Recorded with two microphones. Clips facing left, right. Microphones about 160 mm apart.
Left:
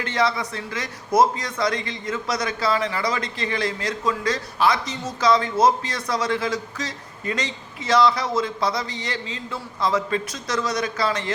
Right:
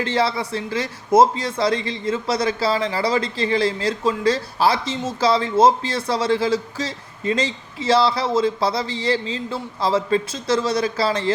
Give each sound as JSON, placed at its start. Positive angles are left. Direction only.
{"t": 0.0, "sound": "speech", "side_deg": -30}